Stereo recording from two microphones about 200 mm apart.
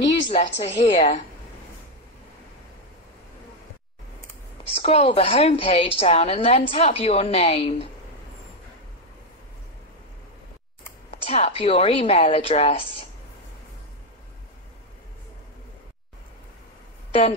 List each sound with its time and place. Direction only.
0.1 s a woman's voice: 30° left (ahead or behind)
4.7 s a woman's voice: 30° left (ahead or behind)
11.1 s a woman's voice: 30° left (ahead or behind)